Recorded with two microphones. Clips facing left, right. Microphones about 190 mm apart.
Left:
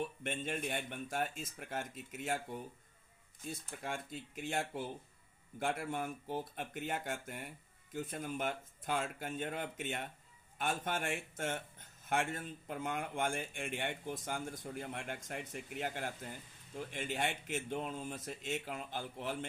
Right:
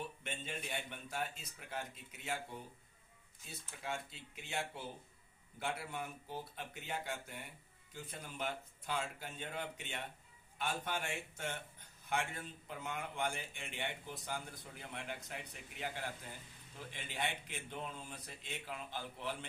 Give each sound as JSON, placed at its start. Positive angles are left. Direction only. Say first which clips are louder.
{"t": 0.2, "sound": "speech", "louder": "left 7 dB", "side_deg": 50}
{"t": 3.4, "sound": "speech", "louder": "left 4 dB", "side_deg": 50}